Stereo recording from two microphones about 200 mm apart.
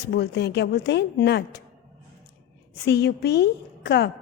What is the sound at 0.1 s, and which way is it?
A woman's voice, 60° left (ahead or behind).